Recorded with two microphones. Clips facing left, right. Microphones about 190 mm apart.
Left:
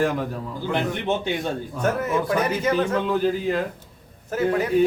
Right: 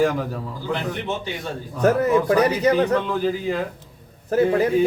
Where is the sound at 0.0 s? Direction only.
Centre (ahead or behind).